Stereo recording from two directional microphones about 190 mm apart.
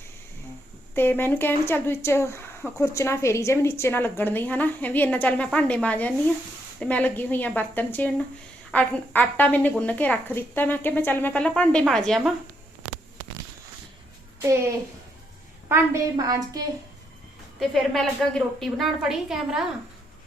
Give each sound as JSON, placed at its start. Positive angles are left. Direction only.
{"t": 0.9, "sound": "speech", "side_deg": 10}
{"t": 14.4, "sound": "a child's voice", "side_deg": -15}
{"t": 15.7, "sound": "a woman's voice", "side_deg": -15}
{"t": 17.6, "sound": "a woman's voice", "side_deg": 0}